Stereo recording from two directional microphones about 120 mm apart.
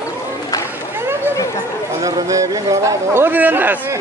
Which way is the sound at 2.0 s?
30° right (ahead or behind).